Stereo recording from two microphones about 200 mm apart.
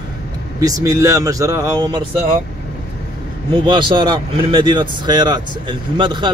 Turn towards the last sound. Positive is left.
turn(degrees=-25)  # may be behind; listen again after turning